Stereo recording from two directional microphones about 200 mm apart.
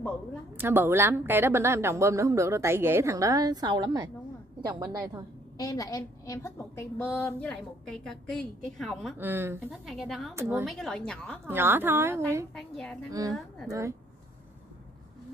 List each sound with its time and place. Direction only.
0.6 s a woman's voice: 10° right (ahead or behind)
5.6 s a woman's voice: 20° left (ahead or behind); by 9.1 s centre (ahead or behind)
9.2 s a woman's voice: 10° right (ahead or behind)
9.7 s a woman's voice: centre (ahead or behind)
11.4 s a woman's voice: 10° right (ahead or behind)
12.5 s a woman's voice: 5° left (ahead or behind)
13.7 s a woman's voice: 15° right (ahead or behind)